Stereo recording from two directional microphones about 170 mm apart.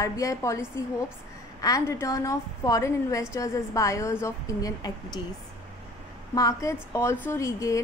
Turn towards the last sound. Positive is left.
turn(degrees=20)  # may be behind; listen again after turning